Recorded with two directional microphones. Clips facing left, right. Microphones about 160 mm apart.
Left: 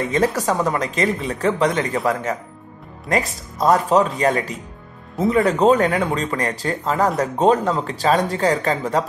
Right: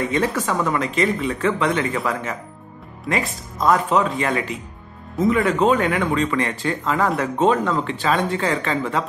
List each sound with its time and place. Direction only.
0.1 s speech: 40° left (ahead or behind)
3.1 s speech: 40° left (ahead or behind)